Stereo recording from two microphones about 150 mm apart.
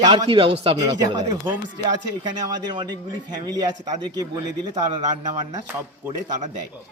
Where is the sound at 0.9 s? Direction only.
25° right (ahead or behind).